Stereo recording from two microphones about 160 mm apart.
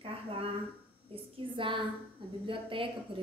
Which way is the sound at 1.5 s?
30° right (ahead or behind).